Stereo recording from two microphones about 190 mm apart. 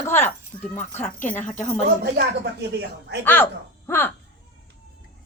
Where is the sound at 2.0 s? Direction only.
60° right (ahead or behind).